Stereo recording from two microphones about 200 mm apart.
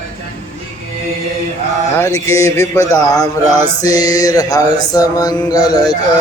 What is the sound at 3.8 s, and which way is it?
Mantra, 20° left (ahead or behind).